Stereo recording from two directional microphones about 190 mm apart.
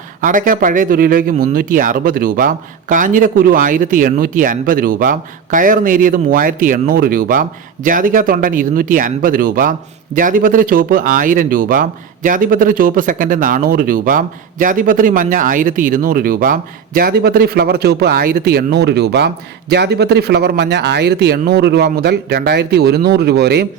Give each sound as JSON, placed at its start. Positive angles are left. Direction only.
{"t": 0.2, "sound": "speech", "side_deg": -45}